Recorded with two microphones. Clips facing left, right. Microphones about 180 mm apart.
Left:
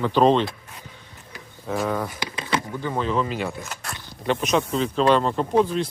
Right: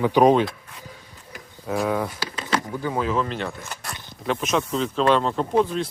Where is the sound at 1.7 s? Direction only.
5° right (ahead or behind).